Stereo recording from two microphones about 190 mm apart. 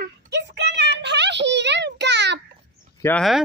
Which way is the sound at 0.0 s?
65° right (ahead or behind).